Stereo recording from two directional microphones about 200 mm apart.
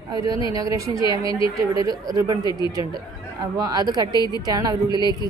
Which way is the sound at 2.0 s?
20° right (ahead or behind).